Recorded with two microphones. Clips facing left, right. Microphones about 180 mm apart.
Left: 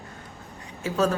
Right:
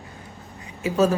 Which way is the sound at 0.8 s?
10° right (ahead or behind).